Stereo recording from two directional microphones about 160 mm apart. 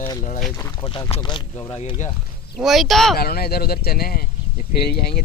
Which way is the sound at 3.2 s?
75° left (ahead or behind).